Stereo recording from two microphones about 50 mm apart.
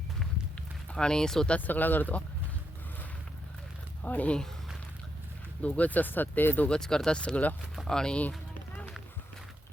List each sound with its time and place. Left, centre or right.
0.9 s speech: centre
1.5 s speech: left
4.0 s speech: left
5.6 s speech: left
6.7 s speech: centre